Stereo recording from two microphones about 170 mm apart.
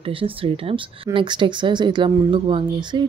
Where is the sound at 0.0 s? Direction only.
30° right (ahead or behind).